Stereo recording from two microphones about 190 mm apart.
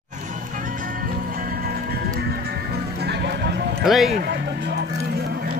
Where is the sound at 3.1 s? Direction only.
60° right (ahead or behind).